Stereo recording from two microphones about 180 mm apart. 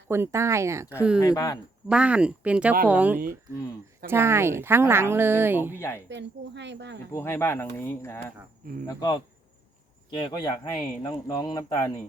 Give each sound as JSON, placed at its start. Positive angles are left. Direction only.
{"t": 0.1, "sound": "speech", "side_deg": -15}
{"t": 1.2, "sound": "speech", "side_deg": 20}
{"t": 1.9, "sound": "speech", "side_deg": -5}
{"t": 6.1, "sound": "speech", "side_deg": -80}
{"t": 7.1, "sound": "speech", "side_deg": 15}
{"t": 8.9, "sound": "speech", "side_deg": 25}